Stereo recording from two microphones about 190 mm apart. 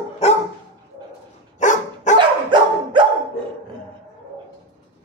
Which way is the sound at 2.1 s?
25° right (ahead or behind).